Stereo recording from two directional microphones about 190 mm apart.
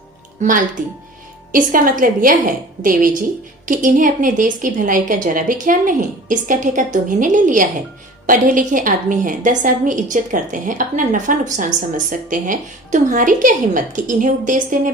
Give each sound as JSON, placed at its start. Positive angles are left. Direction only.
{"t": 0.4, "sound": "a woman's voice", "side_deg": -40}